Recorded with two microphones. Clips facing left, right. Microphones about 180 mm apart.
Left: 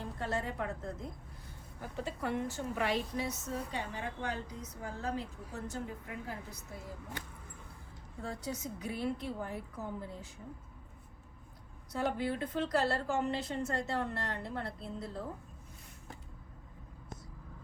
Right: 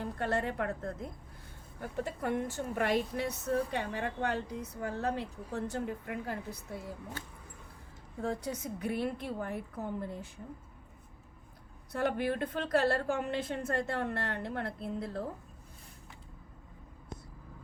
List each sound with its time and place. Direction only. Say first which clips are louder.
0.0 s a woman's voice: right 4 dB; 60° right (ahead or behind)
8.2 s a woman's voice: right 4 dB; 55° right (ahead or behind)
11.9 s a woman's voice: right 2 dB; 60° right (ahead or behind)